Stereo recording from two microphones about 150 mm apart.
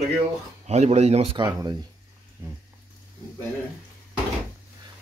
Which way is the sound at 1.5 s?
20° right (ahead or behind).